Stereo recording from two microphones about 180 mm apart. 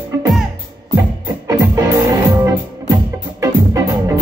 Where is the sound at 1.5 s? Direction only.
15° right (ahead or behind).